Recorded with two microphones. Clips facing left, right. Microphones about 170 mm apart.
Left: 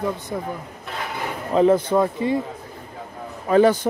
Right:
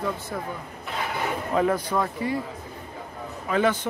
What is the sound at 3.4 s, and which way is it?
Speech, 40° left (ahead or behind).